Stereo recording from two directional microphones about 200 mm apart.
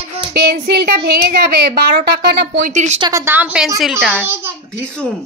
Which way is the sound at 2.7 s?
35° right (ahead or behind).